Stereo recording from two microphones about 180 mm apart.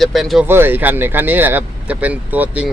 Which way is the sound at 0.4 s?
10° right (ahead or behind).